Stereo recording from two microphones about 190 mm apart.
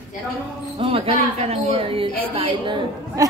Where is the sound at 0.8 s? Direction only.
30° right (ahead or behind).